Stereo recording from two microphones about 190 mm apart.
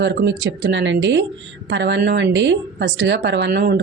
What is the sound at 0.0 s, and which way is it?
Speech, 65° right (ahead or behind).